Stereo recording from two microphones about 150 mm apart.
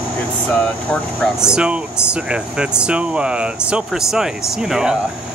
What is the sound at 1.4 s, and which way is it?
Speech, 5° right (ahead or behind).